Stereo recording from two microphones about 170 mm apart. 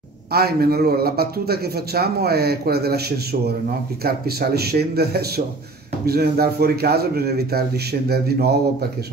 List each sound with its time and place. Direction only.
0.3 s a man's voice: 65° right (ahead or behind)
4.0 s a man's voice: 65° right (ahead or behind)